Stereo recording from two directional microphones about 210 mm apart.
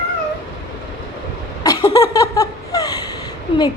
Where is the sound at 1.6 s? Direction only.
15° left (ahead or behind).